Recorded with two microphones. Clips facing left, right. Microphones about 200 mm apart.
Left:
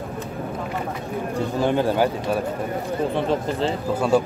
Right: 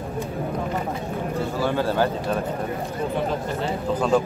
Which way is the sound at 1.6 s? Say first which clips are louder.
Left 3 dB; 20° left (ahead or behind).